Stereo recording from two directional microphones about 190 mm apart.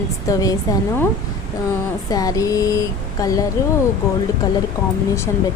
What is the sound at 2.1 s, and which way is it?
Speech, 20° left (ahead or behind).